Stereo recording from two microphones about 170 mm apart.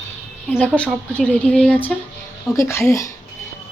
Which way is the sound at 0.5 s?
5° right (ahead or behind).